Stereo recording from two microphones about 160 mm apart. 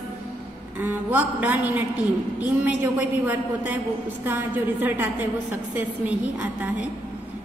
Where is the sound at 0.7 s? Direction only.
10° right (ahead or behind).